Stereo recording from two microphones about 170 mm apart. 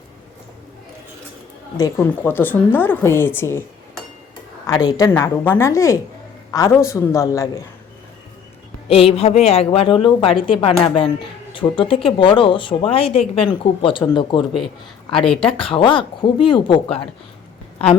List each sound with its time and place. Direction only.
1.8 s a woman's voice: 10° left (ahead or behind)
4.6 s a woman's voice: 20° left (ahead or behind)
8.9 s speech: 35° left (ahead or behind)
15.1 s speech: 5° left (ahead or behind)
15.4 s speech: 30° left (ahead or behind)